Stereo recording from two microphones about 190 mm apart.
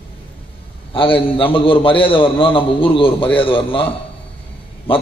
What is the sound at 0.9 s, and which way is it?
A man's voice, 30° left (ahead or behind).